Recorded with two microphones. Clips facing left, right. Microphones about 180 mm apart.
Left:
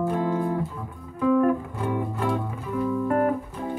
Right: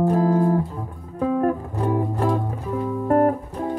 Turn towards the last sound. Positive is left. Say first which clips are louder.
# right 4 dB
turn(degrees=-40)  # may be behind; listen again after turning